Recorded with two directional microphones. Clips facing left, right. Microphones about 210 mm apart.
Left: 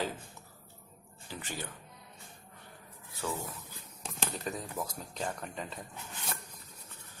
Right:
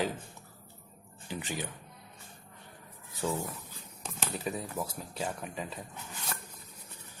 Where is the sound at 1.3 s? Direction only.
15° right (ahead or behind).